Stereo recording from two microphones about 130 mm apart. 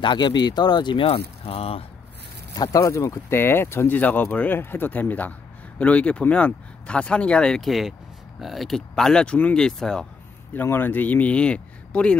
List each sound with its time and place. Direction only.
0.0 s speech: 35° left (ahead or behind)
2.5 s speech: 30° left (ahead or behind); by 10.0 s 5° left (ahead or behind)
10.5 s speech: 15° left (ahead or behind)